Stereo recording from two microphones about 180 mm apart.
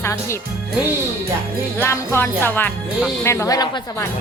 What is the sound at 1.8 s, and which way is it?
Speech, 15° left (ahead or behind).